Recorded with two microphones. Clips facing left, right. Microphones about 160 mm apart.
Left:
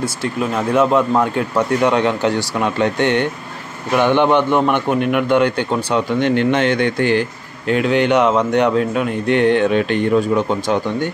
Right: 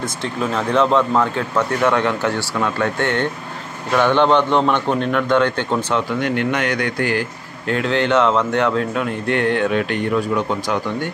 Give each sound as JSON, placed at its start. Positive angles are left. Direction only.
{"t": 0.0, "sound": "speech", "side_deg": 10}
{"t": 6.1, "sound": "speech", "side_deg": 25}